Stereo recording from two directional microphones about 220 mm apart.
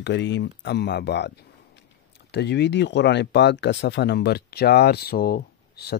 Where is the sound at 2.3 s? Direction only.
50° left (ahead or behind).